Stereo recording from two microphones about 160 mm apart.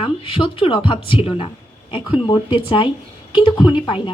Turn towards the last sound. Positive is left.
turn(degrees=30)  # may be behind; listen again after turning